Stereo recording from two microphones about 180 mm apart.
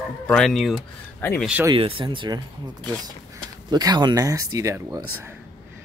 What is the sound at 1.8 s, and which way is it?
Speech, 30° right (ahead or behind).